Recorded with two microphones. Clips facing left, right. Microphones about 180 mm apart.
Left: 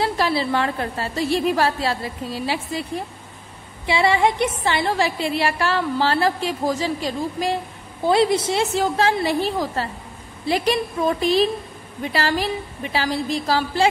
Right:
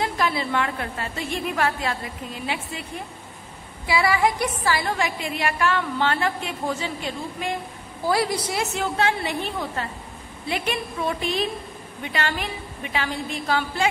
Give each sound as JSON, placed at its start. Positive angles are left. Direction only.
{"t": 0.0, "sound": "a woman's voice", "side_deg": 30}
{"t": 3.8, "sound": "a woman's voice", "side_deg": 25}
{"t": 8.0, "sound": "a woman's voice", "side_deg": 25}